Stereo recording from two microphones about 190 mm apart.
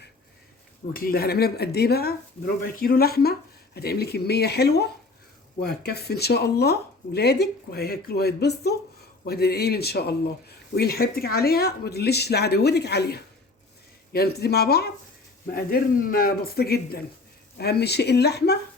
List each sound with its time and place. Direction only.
0.9 s speech: 50° left (ahead or behind)